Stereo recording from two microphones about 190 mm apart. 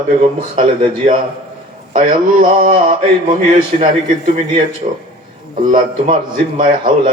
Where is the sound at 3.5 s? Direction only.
35° right (ahead or behind).